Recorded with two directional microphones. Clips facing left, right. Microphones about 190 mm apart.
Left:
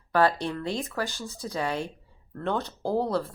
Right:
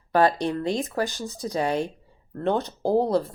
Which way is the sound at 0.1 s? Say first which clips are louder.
Right 3 dB; 20° right (ahead or behind).